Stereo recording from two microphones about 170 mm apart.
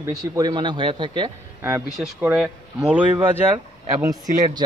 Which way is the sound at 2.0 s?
5° right (ahead or behind).